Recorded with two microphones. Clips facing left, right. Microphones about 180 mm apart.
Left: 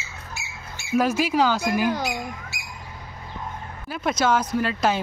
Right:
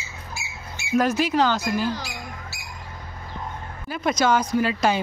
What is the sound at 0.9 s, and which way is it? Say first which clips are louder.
Speech: even; 5° left (ahead or behind).